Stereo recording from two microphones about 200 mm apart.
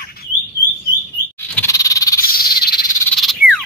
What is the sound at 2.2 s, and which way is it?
Frog, 45° left (ahead or behind).